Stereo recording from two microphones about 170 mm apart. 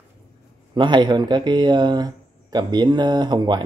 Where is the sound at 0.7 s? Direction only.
25° right (ahead or behind).